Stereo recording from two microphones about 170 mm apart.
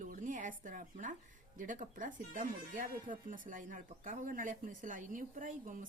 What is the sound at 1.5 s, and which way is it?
Speech, 50° right (ahead or behind).